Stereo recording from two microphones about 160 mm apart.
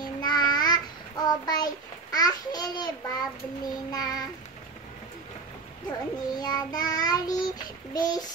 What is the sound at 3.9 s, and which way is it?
Child singing, 25° left (ahead or behind).